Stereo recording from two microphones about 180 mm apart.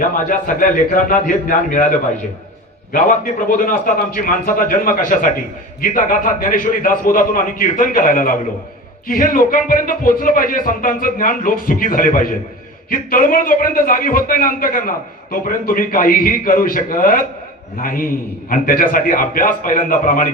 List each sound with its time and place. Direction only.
0.0 s a man's voice: 50° left (ahead or behind)
3.5 s a man's voice: 50° left (ahead or behind)